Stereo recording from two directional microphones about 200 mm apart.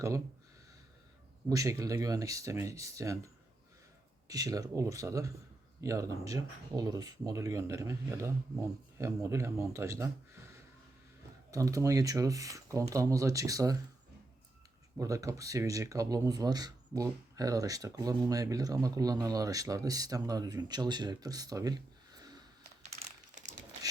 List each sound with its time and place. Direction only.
1.5 s speech: 15° right (ahead or behind)
4.3 s speech: 20° right (ahead or behind)
14.9 s speech: 15° right (ahead or behind)
23.0 s typing: 35° right (ahead or behind)